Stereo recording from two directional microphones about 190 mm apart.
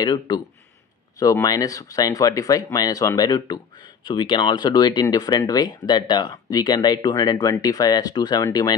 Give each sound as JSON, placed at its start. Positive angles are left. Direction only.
{"t": 0.0, "sound": "speech", "side_deg": 20}